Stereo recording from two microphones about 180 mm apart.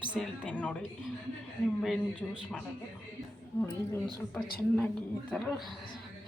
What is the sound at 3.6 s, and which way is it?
Speech, 5° left (ahead or behind).